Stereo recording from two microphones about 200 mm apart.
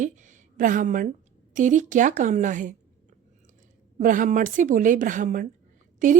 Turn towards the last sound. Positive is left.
turn(degrees=-40)  # may be behind; listen again after turning